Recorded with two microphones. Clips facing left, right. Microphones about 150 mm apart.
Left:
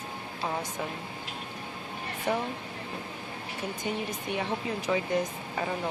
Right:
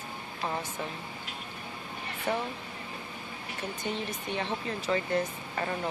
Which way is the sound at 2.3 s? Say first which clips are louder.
Left 2 dB; 15° left (ahead or behind).